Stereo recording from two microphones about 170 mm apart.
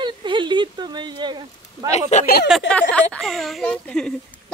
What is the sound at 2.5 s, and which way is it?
Speech, centre (ahead or behind).